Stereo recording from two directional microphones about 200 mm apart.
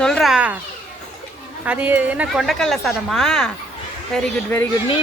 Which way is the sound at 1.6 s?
10° right (ahead or behind).